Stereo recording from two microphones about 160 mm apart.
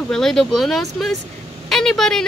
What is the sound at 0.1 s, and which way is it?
Speech, 5° left (ahead or behind).